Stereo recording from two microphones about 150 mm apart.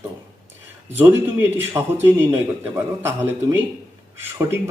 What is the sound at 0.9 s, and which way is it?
Speech, 15° right (ahead or behind).